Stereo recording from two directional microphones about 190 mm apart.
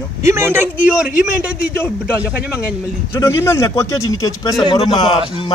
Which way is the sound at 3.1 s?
15° left (ahead or behind).